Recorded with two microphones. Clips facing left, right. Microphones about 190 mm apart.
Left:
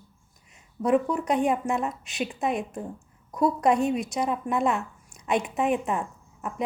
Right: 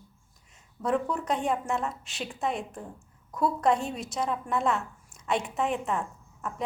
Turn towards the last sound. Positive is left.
turn(degrees=15)  # may be behind; listen again after turning